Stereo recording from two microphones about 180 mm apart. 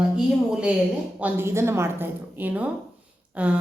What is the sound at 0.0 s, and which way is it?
A woman's voice, 5° right (ahead or behind).